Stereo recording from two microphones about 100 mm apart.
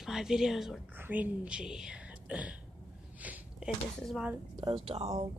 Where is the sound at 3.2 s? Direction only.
10° right (ahead or behind).